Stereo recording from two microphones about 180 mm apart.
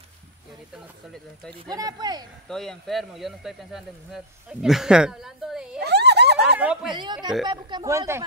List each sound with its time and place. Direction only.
1.7 s speech: 20° right (ahead or behind)
2.4 s speech: 5° left (ahead or behind)
5.8 s a sound: 65° right (ahead or behind)
6.6 s speech: 5° right (ahead or behind)
6.9 s speech: 25° right (ahead or behind)